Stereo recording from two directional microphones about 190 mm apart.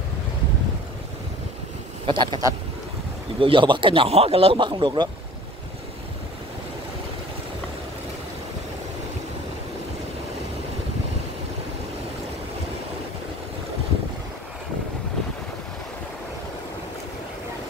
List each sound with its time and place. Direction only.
2.0 s speech: 25° right (ahead or behind)